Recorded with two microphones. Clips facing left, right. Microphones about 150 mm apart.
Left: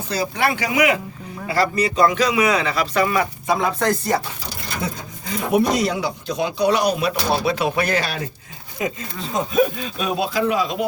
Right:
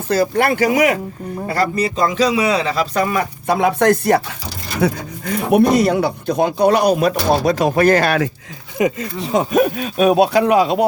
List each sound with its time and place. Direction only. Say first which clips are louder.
0.1 s speech: right 6 dB; 50° right (ahead or behind)
1.7 s a man's voice: even; 30° right (ahead or behind)
3.4 s speech: right 9 dB; 65° right (ahead or behind)
9.2 s speech: right 4 dB; 70° right (ahead or behind)